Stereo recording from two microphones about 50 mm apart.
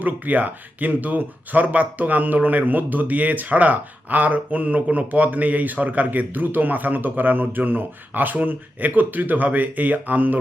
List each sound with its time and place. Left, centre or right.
0.0 s speech: right